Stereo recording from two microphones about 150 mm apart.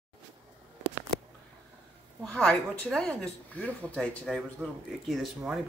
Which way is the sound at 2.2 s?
5° left (ahead or behind).